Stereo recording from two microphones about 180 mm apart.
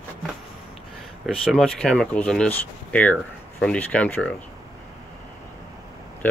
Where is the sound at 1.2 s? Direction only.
Centre (ahead or behind).